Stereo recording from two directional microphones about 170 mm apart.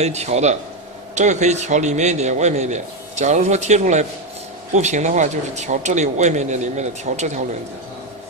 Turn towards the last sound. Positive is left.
turn(degrees=-45)  # may be behind; listen again after turning